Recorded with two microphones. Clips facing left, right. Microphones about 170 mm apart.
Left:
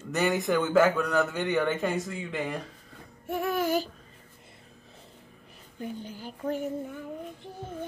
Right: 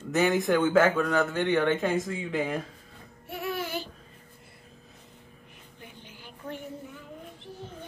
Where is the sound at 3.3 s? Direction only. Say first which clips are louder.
Left 6 dB; 45° left (ahead or behind).